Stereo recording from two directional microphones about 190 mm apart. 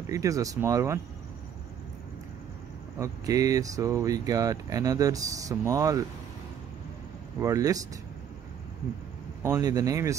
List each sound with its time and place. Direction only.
0.1 s speech: 15° right (ahead or behind)
3.0 s speech: 20° right (ahead or behind)
7.3 s speech: 15° right (ahead or behind)
9.4 s speech: 15° right (ahead or behind)